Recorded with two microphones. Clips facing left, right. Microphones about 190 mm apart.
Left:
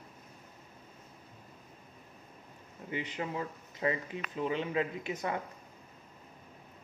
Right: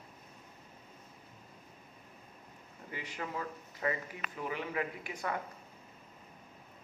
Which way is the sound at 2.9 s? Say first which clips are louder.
Left 5 dB; 20° left (ahead or behind).